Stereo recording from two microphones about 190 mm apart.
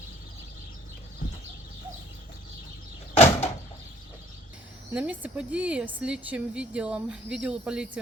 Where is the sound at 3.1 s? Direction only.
35° left (ahead or behind).